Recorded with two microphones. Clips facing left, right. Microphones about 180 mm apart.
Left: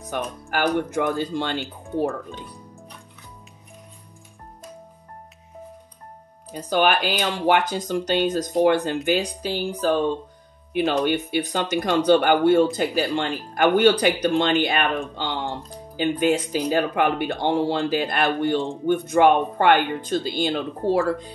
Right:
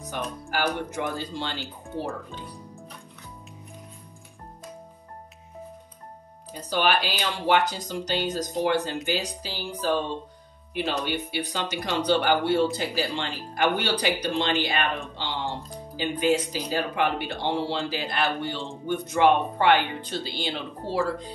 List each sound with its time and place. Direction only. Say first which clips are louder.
0.1 s speech: left 4 dB; 55° left (ahead or behind)
6.7 s speech: left 4 dB; 50° left (ahead or behind)